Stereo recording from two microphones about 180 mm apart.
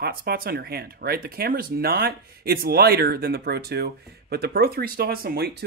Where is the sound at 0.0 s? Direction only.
60° right (ahead or behind).